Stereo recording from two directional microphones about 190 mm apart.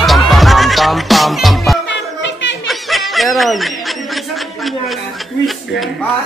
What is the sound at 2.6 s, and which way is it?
Snicker, centre (ahead or behind).